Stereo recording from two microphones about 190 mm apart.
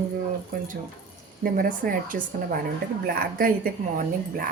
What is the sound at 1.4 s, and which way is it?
A woman's voice, 50° right (ahead or behind).